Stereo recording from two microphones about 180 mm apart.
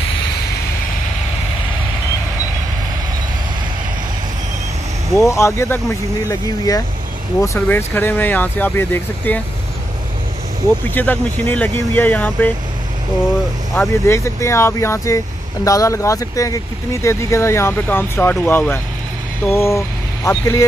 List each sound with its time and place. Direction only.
5.1 s speech: 15° left (ahead or behind)
11.0 s speech: 10° left (ahead or behind)
13.7 s speech: 15° left (ahead or behind)